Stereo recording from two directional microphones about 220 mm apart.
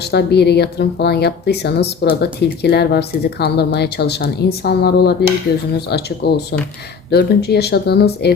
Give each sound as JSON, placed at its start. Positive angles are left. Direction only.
{"t": 0.0, "sound": "a woman's voice", "side_deg": 50}